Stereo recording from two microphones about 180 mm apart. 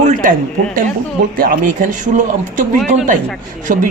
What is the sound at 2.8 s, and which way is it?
A woman's voice, 45° right (ahead or behind).